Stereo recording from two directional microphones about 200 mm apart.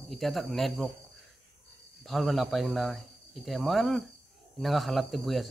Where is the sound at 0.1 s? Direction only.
Centre (ahead or behind).